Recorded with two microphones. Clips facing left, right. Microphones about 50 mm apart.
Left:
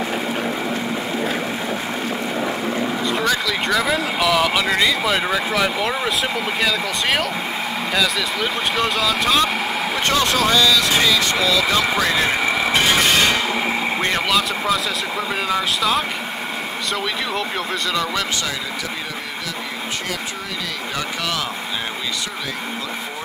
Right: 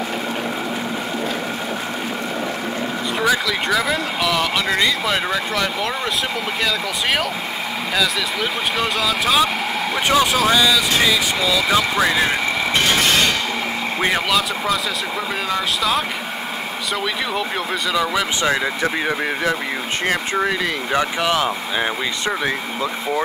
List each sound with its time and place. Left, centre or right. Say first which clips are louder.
3.1 s a sound: right 4 dB; centre
6.6 s speech: even; centre
12.0 s vehicle: right 1 dB; centre
14.0 s speech: right 3 dB; centre
20.9 s speech: right 6 dB; right